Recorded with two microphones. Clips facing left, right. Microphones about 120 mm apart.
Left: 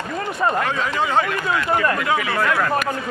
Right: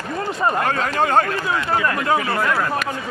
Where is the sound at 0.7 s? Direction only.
50° right (ahead or behind).